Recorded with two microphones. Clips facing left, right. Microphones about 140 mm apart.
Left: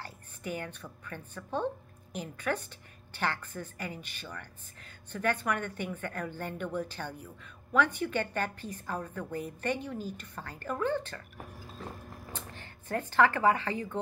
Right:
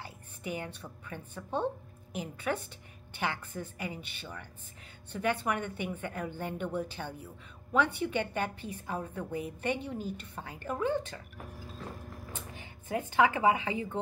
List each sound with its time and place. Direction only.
0.0 s a woman's voice: 15° right (ahead or behind)
12.4 s speech: 10° right (ahead or behind)